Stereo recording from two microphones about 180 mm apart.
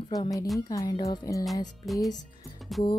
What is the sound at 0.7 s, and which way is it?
Speech, 20° left (ahead or behind).